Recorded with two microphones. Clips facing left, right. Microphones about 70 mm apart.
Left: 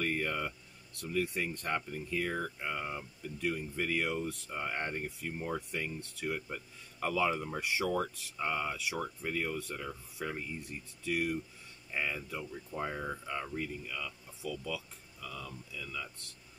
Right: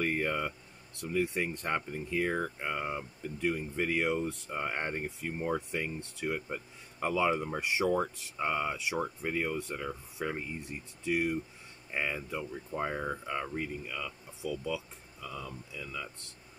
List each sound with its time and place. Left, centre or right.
0.0 s speech: right